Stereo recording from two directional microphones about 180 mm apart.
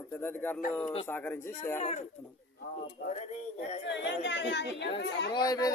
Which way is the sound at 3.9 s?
80° left.